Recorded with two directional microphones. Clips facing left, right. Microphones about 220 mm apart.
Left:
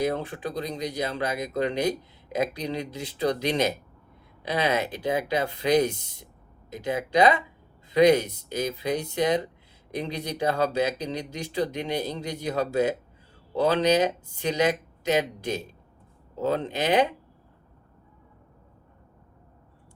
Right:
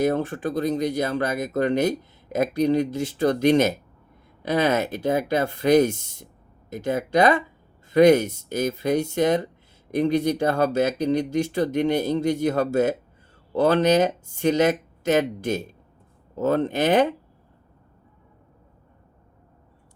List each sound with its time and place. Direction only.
0.0 s speech: 45° right (ahead or behind)